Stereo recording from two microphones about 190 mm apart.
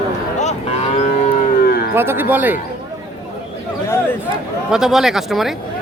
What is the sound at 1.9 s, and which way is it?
Moo, 10° right (ahead or behind).